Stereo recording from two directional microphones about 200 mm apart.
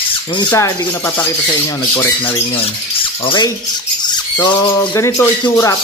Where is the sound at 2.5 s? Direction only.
25° left (ahead or behind).